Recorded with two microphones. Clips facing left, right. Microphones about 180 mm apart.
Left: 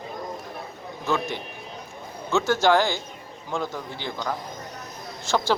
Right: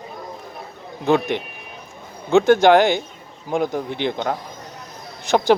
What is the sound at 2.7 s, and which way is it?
Speech, 20° right (ahead or behind).